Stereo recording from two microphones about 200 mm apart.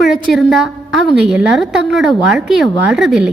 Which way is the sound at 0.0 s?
Centre (ahead or behind).